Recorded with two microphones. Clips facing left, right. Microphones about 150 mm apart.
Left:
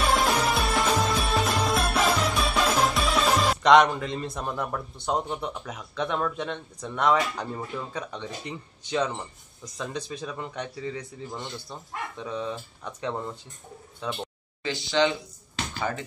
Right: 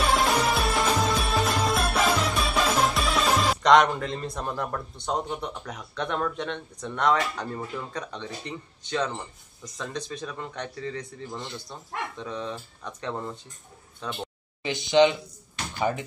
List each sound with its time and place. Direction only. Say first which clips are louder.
0.0 s music: even; centre (ahead or behind)
9.8 s a man's voice: left 1 dB; 10° left (ahead or behind)
14.6 s speech: right 5 dB; 20° right (ahead or behind)